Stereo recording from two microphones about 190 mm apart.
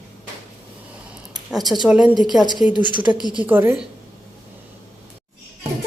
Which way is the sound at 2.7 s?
25° left (ahead or behind).